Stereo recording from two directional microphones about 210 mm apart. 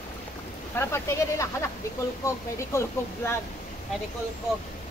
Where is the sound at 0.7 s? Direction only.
15° left (ahead or behind).